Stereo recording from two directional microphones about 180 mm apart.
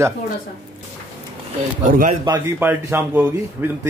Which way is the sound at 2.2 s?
20° right (ahead or behind).